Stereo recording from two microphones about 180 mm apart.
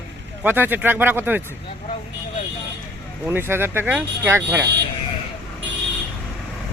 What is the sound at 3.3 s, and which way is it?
Speech, 10° right (ahead or behind).